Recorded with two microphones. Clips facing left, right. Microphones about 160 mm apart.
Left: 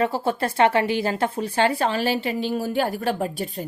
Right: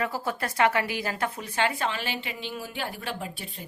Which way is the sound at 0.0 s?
30° left (ahead or behind).